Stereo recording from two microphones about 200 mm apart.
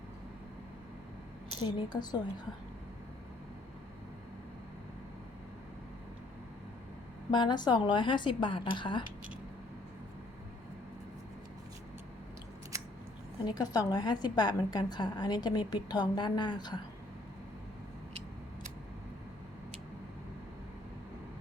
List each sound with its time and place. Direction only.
1.5 s a woman's voice: 20° left (ahead or behind)
7.3 s a woman's voice: 20° left (ahead or behind)
13.4 s a woman's voice: 20° left (ahead or behind)